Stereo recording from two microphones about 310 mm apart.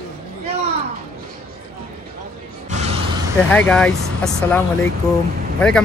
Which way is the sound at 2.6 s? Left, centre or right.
Right.